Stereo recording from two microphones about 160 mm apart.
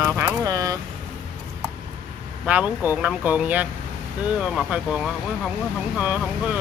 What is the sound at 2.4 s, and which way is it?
Speech, 10° right (ahead or behind).